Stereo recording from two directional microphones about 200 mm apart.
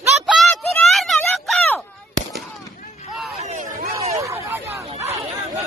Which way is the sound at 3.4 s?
35° right (ahead or behind).